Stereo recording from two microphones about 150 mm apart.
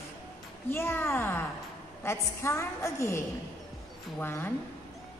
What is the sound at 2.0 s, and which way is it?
A woman's voice, 20° left (ahead or behind).